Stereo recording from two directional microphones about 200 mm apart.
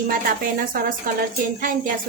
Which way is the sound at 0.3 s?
45° right (ahead or behind).